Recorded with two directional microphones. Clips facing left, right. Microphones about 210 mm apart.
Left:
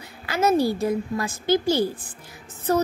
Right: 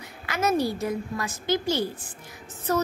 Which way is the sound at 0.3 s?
30° left (ahead or behind).